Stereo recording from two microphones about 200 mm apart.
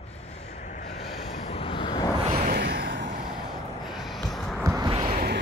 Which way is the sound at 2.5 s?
55° right (ahead or behind).